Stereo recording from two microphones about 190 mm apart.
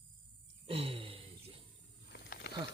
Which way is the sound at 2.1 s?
60° left (ahead or behind).